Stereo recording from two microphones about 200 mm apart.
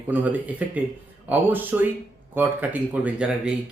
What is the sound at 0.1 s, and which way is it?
Speech, 10° right (ahead or behind).